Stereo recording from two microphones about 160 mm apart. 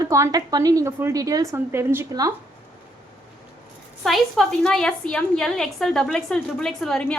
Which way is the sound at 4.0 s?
Centre (ahead or behind).